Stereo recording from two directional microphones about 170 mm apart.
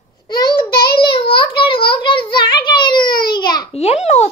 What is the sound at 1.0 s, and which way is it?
A child's voice, 30° left (ahead or behind).